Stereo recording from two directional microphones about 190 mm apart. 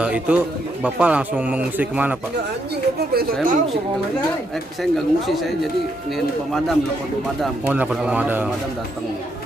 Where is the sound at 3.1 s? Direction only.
55° right (ahead or behind).